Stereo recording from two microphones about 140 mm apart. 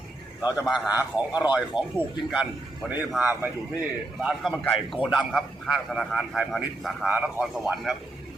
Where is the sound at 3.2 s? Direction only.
10° right (ahead or behind).